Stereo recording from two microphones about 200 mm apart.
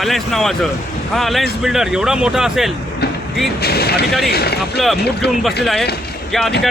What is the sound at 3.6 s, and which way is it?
Speech, 50° left (ahead or behind).